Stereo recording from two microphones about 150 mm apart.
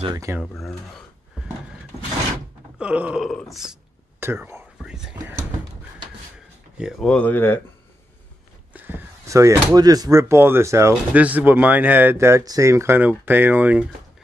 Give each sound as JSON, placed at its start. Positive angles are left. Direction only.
{"t": 0.0, "sound": "speech", "side_deg": -25}
{"t": 0.4, "sound": "speech", "side_deg": 5}
{"t": 2.8, "sound": "groan", "side_deg": -10}
{"t": 3.3, "sound": "speech", "side_deg": 0}
{"t": 4.2, "sound": "whispering", "side_deg": -15}
{"t": 4.9, "sound": "speech", "side_deg": -10}
{"t": 6.8, "sound": "speech", "side_deg": 0}
{"t": 8.7, "sound": "a sound", "side_deg": -15}
{"t": 9.8, "sound": "speech", "side_deg": -25}